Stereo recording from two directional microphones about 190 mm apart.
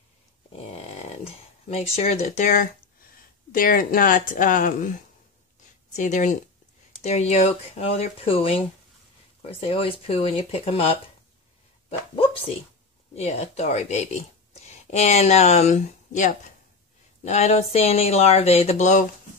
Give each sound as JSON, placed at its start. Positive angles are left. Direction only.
{"t": 0.5, "sound": "a sound", "side_deg": 30}
{"t": 3.5, "sound": "speech", "side_deg": 50}
{"t": 13.1, "sound": "speech", "side_deg": 35}